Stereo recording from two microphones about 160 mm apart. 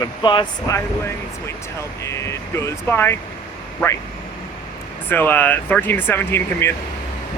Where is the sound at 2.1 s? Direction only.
15° left (ahead or behind).